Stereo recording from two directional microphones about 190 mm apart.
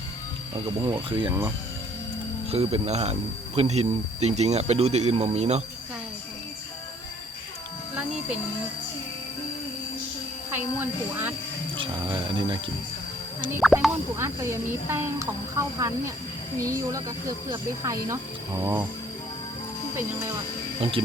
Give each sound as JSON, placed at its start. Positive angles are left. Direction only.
{"t": 0.8, "sound": "speech", "side_deg": -25}
{"t": 2.5, "sound": "speech", "side_deg": -35}
{"t": 10.8, "sound": "speech", "side_deg": -10}
{"t": 11.8, "sound": "speech", "side_deg": -25}
{"t": 13.7, "sound": "speech", "side_deg": 0}
{"t": 14.2, "sound": "speech", "side_deg": -15}
{"t": 20.8, "sound": "speech", "side_deg": -30}